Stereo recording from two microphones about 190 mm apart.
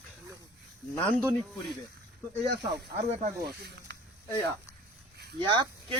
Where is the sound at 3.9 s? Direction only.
65° right (ahead or behind).